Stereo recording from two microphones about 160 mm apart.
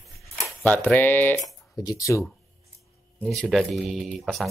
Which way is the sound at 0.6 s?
10° left (ahead or behind).